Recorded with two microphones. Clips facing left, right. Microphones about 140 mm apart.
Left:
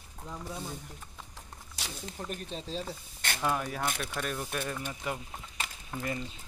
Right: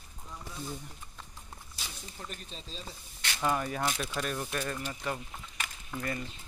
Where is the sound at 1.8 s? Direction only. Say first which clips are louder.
Left 6 dB; 80° left.